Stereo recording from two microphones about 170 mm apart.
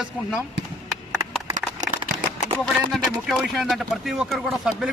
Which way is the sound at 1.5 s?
45° right (ahead or behind).